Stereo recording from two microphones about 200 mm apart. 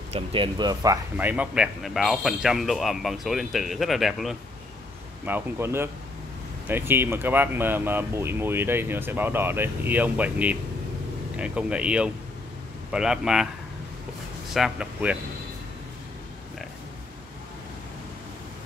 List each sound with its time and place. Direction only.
0.1 s speech: 25° right (ahead or behind)
1.1 s a man's voice: 5° right (ahead or behind)
14.5 s a man's voice: 5° right (ahead or behind)